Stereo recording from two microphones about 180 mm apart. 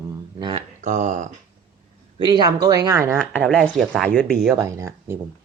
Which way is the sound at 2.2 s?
25° right (ahead or behind).